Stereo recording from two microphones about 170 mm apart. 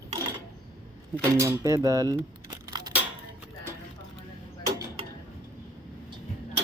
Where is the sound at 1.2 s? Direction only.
15° right (ahead or behind).